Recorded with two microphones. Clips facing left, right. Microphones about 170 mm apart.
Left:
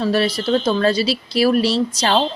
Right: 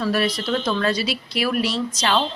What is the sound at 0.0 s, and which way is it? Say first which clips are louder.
A woman's voice: left 4 dB; 30° left (ahead or behind).